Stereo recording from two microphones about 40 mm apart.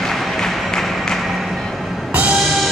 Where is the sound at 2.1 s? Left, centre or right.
Right.